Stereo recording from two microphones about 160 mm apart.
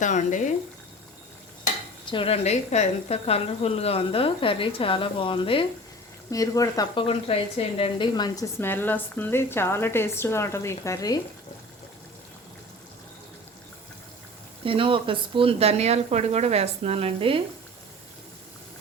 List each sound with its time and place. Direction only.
0.0 s speech: 50° left (ahead or behind)
2.0 s speech: 35° left (ahead or behind)
6.3 s speech: 20° left (ahead or behind)
7.1 s speech: 40° left (ahead or behind); by 11.2 s 20° left (ahead or behind)
14.6 s speech: 35° right (ahead or behind)